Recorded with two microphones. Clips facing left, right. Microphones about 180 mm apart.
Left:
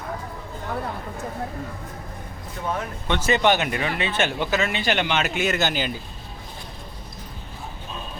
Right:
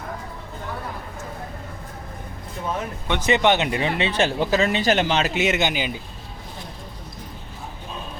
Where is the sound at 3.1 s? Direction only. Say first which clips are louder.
Right 1 dB; 15° right (ahead or behind).